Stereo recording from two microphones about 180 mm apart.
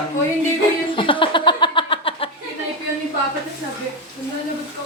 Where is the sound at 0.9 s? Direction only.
30° left (ahead or behind).